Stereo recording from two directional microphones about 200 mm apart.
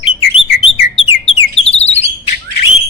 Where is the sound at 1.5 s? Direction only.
30° left (ahead or behind).